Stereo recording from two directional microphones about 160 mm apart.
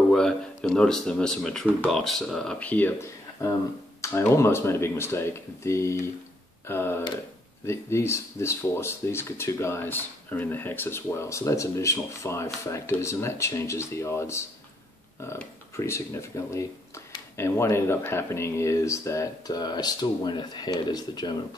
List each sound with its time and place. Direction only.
0.1 s speech: 5° left (ahead or behind); by 21.4 s 25° left (ahead or behind)